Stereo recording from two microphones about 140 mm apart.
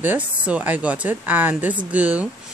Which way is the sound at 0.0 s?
10° right (ahead or behind).